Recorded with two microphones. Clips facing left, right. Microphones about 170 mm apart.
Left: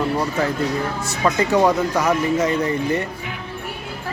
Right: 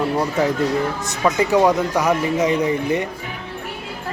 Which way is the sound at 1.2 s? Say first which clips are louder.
Right 1 dB; 10° right (ahead or behind).